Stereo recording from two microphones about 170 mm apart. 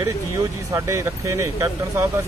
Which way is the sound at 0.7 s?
20° right (ahead or behind).